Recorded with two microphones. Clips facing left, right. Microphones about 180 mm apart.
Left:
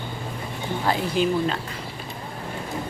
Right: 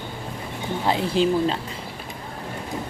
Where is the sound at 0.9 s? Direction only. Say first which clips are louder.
Right 2 dB; 30° right (ahead or behind).